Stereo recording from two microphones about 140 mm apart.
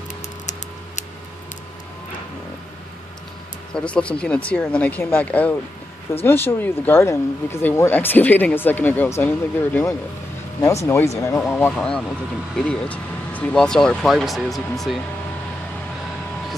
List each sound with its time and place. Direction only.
3.7 s speech: 10° left (ahead or behind)
11.7 s speech: 5° left (ahead or behind)